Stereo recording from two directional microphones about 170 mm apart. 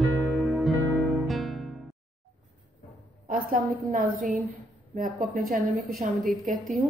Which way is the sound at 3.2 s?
55° right (ahead or behind).